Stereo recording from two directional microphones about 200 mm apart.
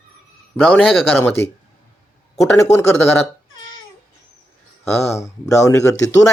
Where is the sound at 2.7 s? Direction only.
35° left (ahead or behind).